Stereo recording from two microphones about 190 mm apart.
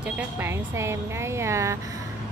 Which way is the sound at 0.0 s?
15° right (ahead or behind).